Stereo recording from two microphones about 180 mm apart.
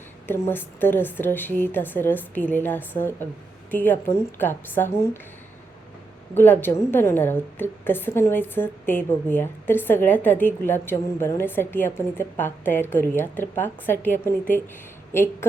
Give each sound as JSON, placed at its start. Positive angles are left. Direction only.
{"t": 0.3, "sound": "a woman's voice", "side_deg": 10}
{"t": 6.3, "sound": "a woman's voice", "side_deg": 10}